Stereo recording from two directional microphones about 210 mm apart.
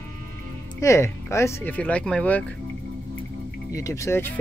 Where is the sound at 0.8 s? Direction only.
15° left (ahead or behind).